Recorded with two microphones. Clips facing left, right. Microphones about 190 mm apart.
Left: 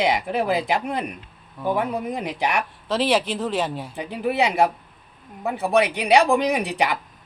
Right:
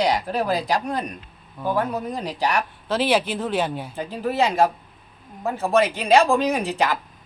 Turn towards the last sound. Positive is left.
turn(degrees=15)  # may be behind; listen again after turning